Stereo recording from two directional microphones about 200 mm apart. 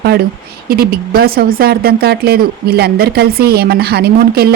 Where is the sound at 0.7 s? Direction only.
50° right (ahead or behind).